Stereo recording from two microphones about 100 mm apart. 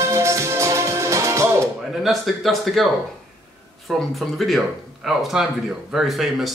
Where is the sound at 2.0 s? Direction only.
Centre (ahead or behind).